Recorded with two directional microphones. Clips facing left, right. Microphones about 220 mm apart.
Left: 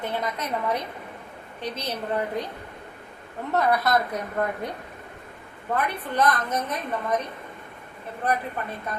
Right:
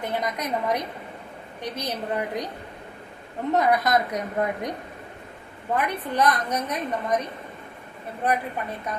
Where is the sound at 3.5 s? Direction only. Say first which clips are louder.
Right 1 dB; 15° right (ahead or behind).